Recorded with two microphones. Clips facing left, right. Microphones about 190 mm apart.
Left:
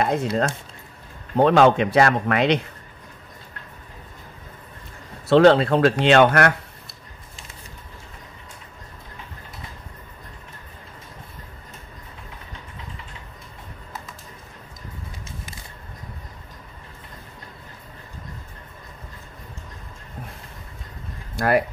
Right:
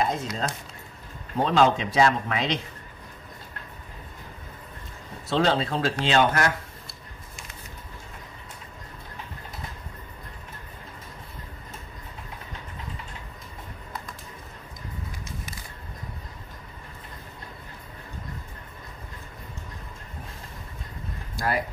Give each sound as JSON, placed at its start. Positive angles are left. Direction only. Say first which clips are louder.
{"t": 0.0, "sound": "speech", "louder": "left 5 dB", "side_deg": 60}
{"t": 1.4, "sound": "speech", "louder": "left 6 dB", "side_deg": 60}
{"t": 5.3, "sound": "speech", "louder": "left 10 dB", "side_deg": 65}
{"t": 21.4, "sound": "a sound", "louder": "left 8 dB", "side_deg": 65}